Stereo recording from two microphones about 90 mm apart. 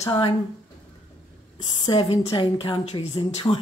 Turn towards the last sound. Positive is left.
turn(degrees=40)  # may be behind; listen again after turning